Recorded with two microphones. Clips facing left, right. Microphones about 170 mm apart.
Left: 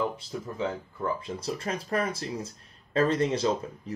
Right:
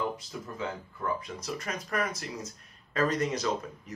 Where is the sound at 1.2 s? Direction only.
30° left (ahead or behind).